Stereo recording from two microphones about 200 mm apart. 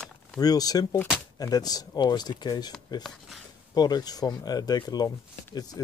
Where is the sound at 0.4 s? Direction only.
20° left (ahead or behind).